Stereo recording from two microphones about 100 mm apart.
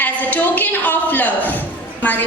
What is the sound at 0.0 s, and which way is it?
A woman's voice, 15° left (ahead or behind).